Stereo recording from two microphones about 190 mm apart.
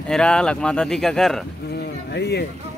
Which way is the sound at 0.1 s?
5° left (ahead or behind).